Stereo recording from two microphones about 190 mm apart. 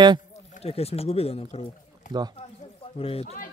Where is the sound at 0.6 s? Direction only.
30° left (ahead or behind).